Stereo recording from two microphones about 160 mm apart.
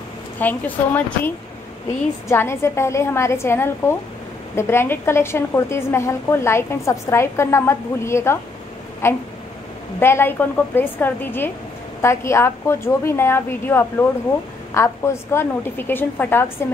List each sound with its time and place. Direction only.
0.4 s a woman's voice: 10° left (ahead or behind)